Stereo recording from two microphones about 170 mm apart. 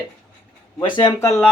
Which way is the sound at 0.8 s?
25° left (ahead or behind).